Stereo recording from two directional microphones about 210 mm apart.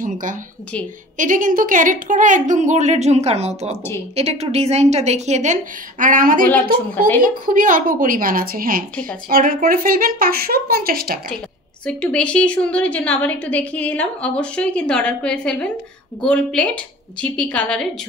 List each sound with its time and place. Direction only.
0.0 s a woman's voice: 40° right (ahead or behind)
11.8 s a woman's voice: 5° left (ahead or behind)